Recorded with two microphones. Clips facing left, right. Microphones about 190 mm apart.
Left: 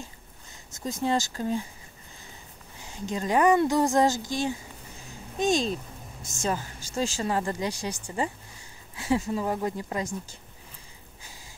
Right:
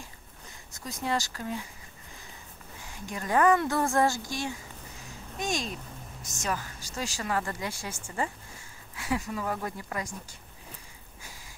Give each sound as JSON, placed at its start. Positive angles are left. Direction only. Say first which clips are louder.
{"t": 0.7, "sound": "speech", "louder": "left 5 dB", "side_deg": 25}
{"t": 2.8, "sound": "speech", "louder": "left 7 dB", "side_deg": 25}